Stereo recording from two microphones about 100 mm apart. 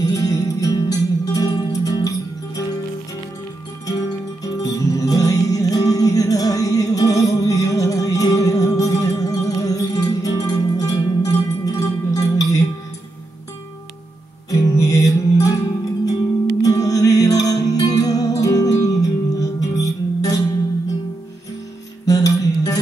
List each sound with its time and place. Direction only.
0.0 s music: 40° left (ahead or behind)
4.5 s music: 35° left (ahead or behind)
14.5 s music: 35° left (ahead or behind)
22.0 s music: 35° left (ahead or behind)